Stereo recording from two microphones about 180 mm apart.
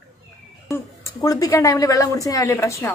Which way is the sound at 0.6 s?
20° left (ahead or behind).